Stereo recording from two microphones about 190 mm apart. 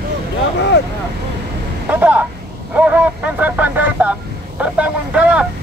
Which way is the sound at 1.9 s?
10° right (ahead or behind).